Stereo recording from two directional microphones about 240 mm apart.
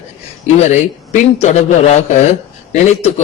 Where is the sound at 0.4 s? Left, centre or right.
Left.